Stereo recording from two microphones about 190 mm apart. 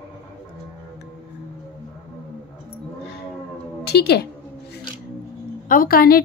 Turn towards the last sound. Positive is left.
turn(degrees=50)  # may be behind; listen again after turning